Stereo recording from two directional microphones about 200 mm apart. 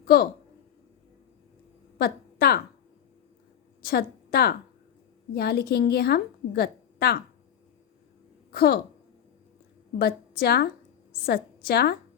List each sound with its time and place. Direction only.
0.0 s speech: 50° left (ahead or behind)
2.0 s a woman's voice: 50° left (ahead or behind)
3.8 s a woman's voice: 50° left (ahead or behind)
8.5 s a woman's voice: 50° left (ahead or behind)
10.0 s a woman's voice: 50° left (ahead or behind)